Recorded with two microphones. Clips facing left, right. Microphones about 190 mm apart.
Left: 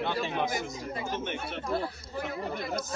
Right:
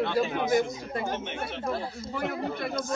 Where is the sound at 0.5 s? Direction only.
55° right (ahead or behind).